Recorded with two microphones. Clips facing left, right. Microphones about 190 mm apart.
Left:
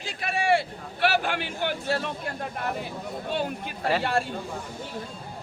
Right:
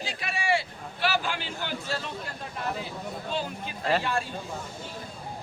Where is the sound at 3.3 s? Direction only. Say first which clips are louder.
Left 4 dB; 60° left (ahead or behind).